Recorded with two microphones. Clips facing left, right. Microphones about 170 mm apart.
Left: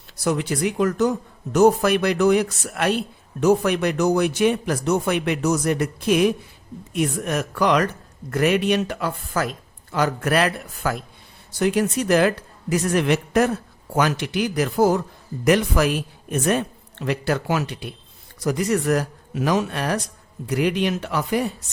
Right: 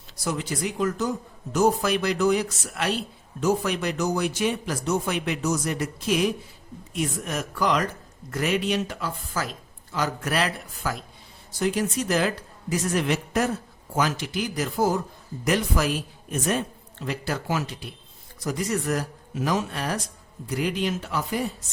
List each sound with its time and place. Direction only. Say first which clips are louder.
0.3 s speech: left 6 dB; 65° left (ahead or behind)